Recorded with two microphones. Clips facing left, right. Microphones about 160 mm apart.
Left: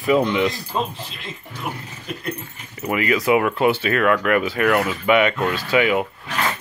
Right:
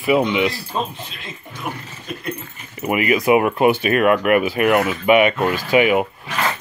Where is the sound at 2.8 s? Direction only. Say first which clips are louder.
Right 2 dB; 15° right (ahead or behind).